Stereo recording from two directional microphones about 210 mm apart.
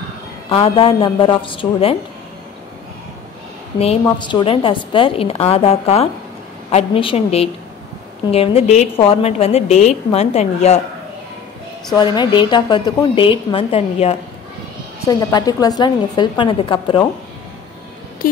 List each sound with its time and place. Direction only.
0.5 s a woman's voice: 25° left (ahead or behind)
3.8 s a woman's voice: 25° left (ahead or behind)
11.9 s a woman's voice: 20° left (ahead or behind)
15.0 s a woman's voice: 15° left (ahead or behind)
18.2 s speech: 40° left (ahead or behind)